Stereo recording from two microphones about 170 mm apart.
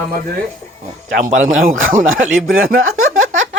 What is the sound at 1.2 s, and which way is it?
Speech, 50° right (ahead or behind).